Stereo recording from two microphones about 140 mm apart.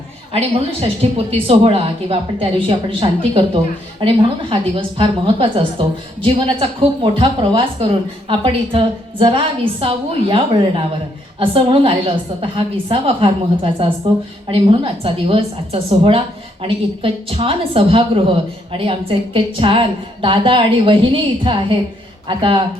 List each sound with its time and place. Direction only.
0.3 s a woman's voice: 45° right (ahead or behind)